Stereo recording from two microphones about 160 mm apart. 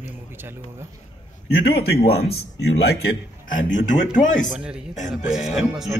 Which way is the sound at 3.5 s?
55° left (ahead or behind).